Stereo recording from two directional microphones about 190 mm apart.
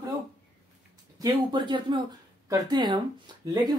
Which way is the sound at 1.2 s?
25° right (ahead or behind).